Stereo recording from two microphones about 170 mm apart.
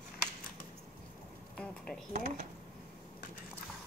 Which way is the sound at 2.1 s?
45° right (ahead or behind).